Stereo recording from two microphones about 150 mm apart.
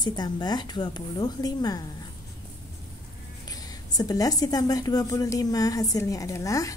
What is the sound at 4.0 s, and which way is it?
A woman's voice, 25° left (ahead or behind).